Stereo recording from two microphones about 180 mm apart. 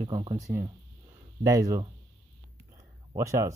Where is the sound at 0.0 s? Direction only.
25° right (ahead or behind).